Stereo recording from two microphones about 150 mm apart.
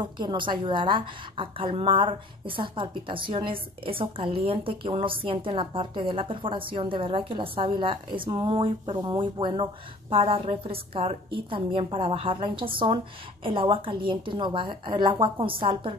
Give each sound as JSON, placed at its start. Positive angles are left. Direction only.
{"t": 0.0, "sound": "a woman's voice", "side_deg": -30}